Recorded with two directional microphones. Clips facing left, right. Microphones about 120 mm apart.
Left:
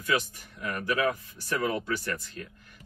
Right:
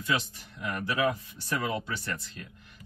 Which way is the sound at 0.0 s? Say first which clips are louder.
Left 2 dB; 25° right (ahead or behind).